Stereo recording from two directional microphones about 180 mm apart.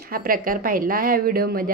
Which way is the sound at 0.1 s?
55° right (ahead or behind).